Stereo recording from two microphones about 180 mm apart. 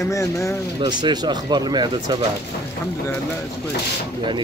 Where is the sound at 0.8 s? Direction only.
25° right (ahead or behind).